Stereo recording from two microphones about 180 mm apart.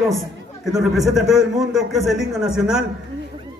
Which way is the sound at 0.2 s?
Centre (ahead or behind).